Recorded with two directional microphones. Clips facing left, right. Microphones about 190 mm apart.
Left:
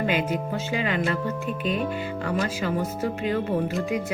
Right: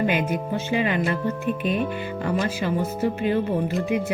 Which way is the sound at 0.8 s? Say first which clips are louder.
Right 2 dB; 30° right (ahead or behind).